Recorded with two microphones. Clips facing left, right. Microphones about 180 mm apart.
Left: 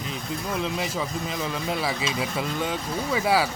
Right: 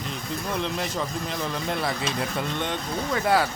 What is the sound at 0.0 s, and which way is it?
Speech, 5° left (ahead or behind).